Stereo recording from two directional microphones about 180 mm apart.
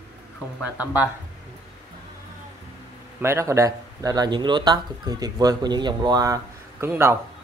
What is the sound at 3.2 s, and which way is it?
Speech, 15° right (ahead or behind).